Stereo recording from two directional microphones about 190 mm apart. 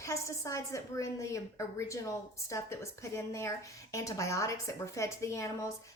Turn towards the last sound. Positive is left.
turn(degrees=15)  # may be behind; listen again after turning